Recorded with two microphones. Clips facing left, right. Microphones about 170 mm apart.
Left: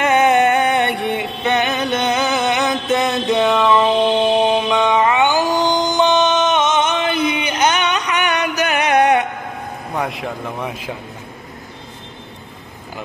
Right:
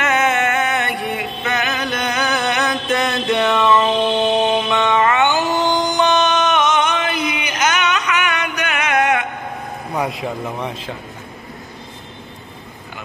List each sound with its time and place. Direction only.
0.0 s music: 35° left (ahead or behind)
9.9 s a man's voice: centre (ahead or behind)